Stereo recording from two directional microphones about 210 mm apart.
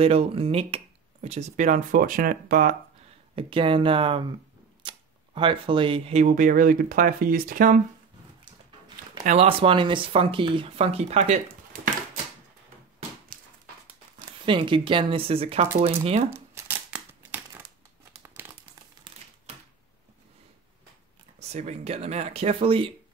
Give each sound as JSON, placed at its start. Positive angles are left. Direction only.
{"t": 0.0, "sound": "speech", "side_deg": -30}
{"t": 3.3, "sound": "speech", "side_deg": -25}
{"t": 9.2, "sound": "speech", "side_deg": -30}
{"t": 13.3, "sound": "dog", "side_deg": -45}
{"t": 14.4, "sound": "speech", "side_deg": -25}
{"t": 16.3, "sound": "a sound", "side_deg": -10}
{"t": 18.2, "sound": "crumpling", "side_deg": -10}
{"t": 21.4, "sound": "speech", "side_deg": -30}